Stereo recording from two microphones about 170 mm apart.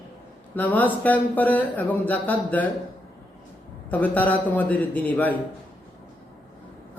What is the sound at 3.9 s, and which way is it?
Speech, 10° left (ahead or behind).